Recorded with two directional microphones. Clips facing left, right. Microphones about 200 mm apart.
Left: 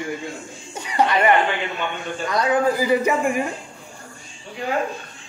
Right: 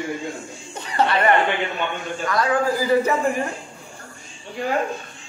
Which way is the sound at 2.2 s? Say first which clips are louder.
Left 2 dB; 20° left (ahead or behind).